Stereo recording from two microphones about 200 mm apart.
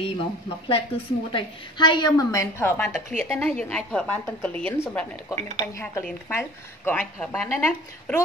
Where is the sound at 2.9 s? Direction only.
Centre (ahead or behind).